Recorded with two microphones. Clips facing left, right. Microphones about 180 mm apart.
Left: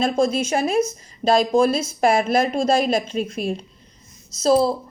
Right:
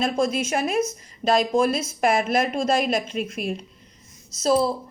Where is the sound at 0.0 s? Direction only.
30° left (ahead or behind).